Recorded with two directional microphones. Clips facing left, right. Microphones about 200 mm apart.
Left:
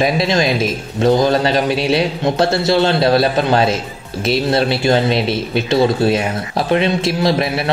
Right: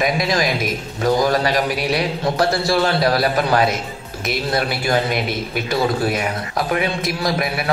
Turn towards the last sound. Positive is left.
turn(degrees=25)  # may be behind; listen again after turning